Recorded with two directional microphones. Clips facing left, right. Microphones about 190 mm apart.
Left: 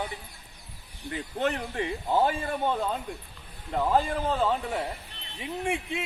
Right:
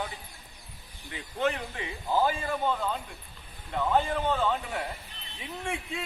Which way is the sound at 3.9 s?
30° left (ahead or behind).